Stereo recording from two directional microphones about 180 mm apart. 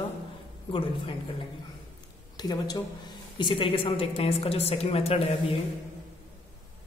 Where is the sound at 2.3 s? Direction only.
25° left (ahead or behind).